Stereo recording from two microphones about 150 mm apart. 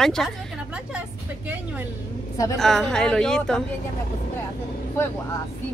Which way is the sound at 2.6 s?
5° left (ahead or behind).